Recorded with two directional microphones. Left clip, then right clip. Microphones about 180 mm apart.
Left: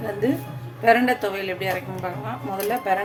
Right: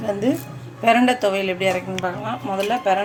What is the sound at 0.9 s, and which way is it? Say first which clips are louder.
A woman's voice: right 2 dB; 25° right (ahead or behind).